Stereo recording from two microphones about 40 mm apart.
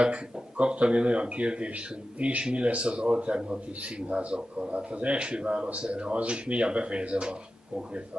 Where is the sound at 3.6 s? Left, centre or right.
Right.